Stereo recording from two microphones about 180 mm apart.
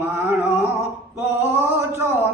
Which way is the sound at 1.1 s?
15° right (ahead or behind).